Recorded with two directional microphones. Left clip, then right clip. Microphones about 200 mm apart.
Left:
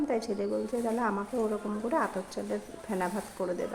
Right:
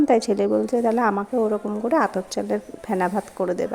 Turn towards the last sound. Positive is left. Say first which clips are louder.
# right 9 dB
turn(degrees=-35)  # may be behind; listen again after turning